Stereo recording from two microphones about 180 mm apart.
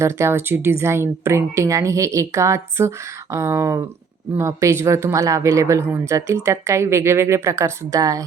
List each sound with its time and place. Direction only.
0.0 s speech: 15° right (ahead or behind)